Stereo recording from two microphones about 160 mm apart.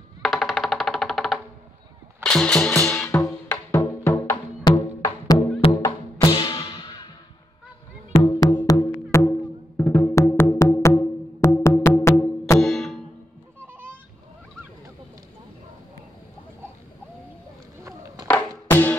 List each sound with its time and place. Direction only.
0.2 s music: centre (ahead or behind); by 6.9 s 30° left (ahead or behind)
8.1 s music: 25° left (ahead or behind)
12.5 s music: centre (ahead or behind)
18.7 s music: 10° left (ahead or behind)